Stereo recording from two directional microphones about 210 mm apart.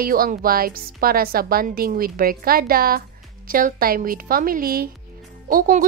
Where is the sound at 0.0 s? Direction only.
45° right (ahead or behind).